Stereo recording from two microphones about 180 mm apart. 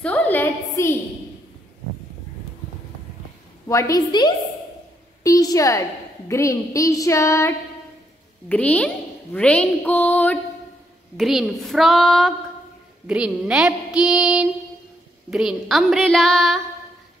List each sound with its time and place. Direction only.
0.0 s a sound: 5° left (ahead or behind)
3.6 s a woman's voice: 15° left (ahead or behind)
11.1 s child singing: centre (ahead or behind)